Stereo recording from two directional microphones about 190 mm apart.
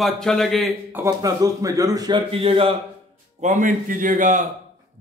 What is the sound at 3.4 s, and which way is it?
A man's voice, 40° right (ahead or behind).